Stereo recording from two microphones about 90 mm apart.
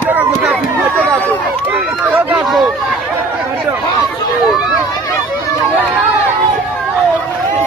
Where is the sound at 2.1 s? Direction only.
15° right (ahead or behind).